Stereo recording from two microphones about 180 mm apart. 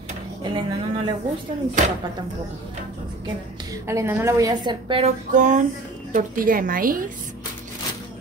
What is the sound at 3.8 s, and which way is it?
A woman's voice, 15° right (ahead or behind).